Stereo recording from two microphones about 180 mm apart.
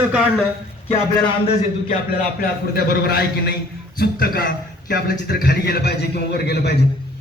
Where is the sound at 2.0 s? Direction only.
55° left (ahead or behind).